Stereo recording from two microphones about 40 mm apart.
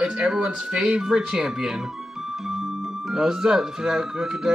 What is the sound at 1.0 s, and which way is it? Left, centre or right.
Speech, centre.